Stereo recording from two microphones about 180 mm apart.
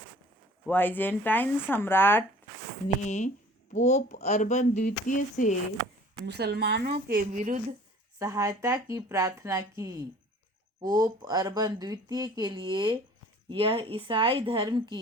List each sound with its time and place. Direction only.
0.7 s speech: 10° left (ahead or behind)
3.1 s speech: 45° left (ahead or behind)
6.2 s speech: 65° right (ahead or behind)
6.9 s speech: 45° right (ahead or behind)
8.2 s speech: 15° right (ahead or behind)